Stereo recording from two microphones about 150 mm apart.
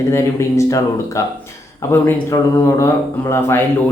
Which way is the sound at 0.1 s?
20° left (ahead or behind).